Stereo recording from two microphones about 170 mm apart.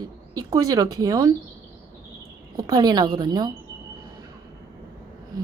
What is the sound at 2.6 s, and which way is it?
Speech, 25° right (ahead or behind).